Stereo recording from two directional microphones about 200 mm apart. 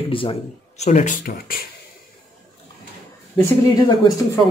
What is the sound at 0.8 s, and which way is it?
Speech, 35° left (ahead or behind).